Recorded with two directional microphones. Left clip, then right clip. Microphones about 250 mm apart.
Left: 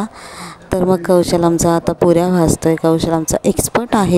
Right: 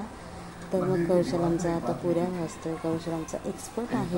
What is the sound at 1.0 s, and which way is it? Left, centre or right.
Speech, left.